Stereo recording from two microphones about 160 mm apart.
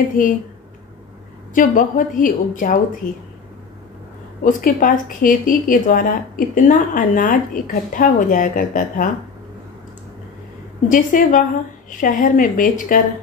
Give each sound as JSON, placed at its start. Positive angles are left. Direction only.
{"t": 0.2, "sound": "speech", "side_deg": 55}
{"t": 1.5, "sound": "speech", "side_deg": 55}
{"t": 4.5, "sound": "speech", "side_deg": 60}
{"t": 10.9, "sound": "speech", "side_deg": 55}